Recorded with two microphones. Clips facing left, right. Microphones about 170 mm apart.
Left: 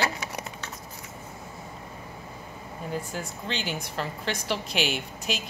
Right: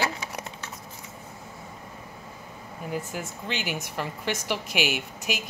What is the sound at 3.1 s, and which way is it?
A woman's voice, 10° right (ahead or behind).